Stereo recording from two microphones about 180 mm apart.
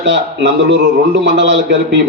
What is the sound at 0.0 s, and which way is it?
A man's voice, 75° right (ahead or behind).